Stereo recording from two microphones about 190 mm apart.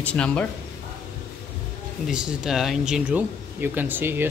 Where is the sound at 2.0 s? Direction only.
5° right (ahead or behind).